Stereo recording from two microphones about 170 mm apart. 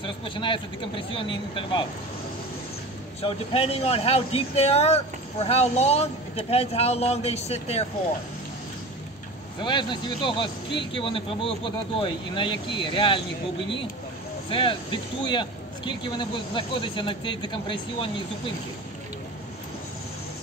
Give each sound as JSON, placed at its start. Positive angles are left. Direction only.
{"t": 0.0, "sound": "speech", "side_deg": 30}
{"t": 3.2, "sound": "speech", "side_deg": 35}
{"t": 9.6, "sound": "speech", "side_deg": 30}
{"t": 14.5, "sound": "speech", "side_deg": 30}